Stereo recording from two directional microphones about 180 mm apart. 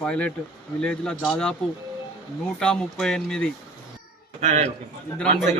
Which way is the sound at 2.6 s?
5° left (ahead or behind).